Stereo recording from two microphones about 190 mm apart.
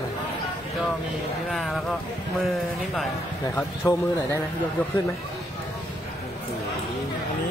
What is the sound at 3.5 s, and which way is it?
Speech, 15° left (ahead or behind).